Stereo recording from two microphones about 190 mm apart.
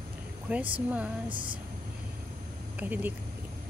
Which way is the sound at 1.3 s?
25° right (ahead or behind).